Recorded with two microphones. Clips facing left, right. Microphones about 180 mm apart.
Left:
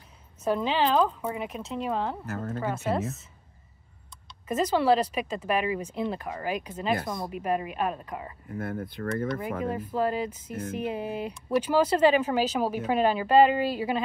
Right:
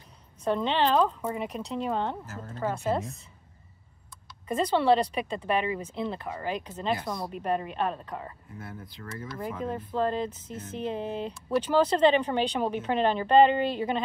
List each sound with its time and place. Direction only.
0.4 s a woman's voice: 5° left (ahead or behind)
2.2 s speech: 60° left (ahead or behind)
2.6 s a woman's voice: 5° left (ahead or behind)
4.5 s speech: 5° left (ahead or behind)
8.5 s speech: 55° left (ahead or behind)
9.7 s speech: 10° left (ahead or behind)